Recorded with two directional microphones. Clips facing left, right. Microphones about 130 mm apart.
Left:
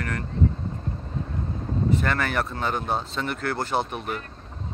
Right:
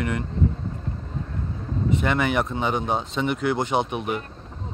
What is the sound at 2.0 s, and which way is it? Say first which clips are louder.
Speech: right 3 dB; 15° right (ahead or behind).